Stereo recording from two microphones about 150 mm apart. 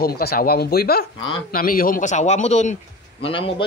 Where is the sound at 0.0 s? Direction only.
90° left.